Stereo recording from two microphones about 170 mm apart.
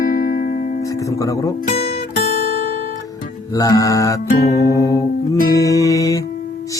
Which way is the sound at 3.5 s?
20° left (ahead or behind).